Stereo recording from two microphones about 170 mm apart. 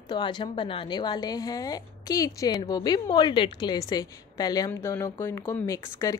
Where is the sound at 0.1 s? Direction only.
25° left (ahead or behind).